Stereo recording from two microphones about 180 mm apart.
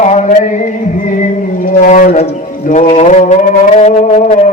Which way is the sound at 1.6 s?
45° left (ahead or behind).